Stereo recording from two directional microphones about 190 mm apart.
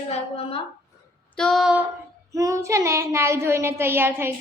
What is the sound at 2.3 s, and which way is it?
Child singing, 15° right (ahead or behind).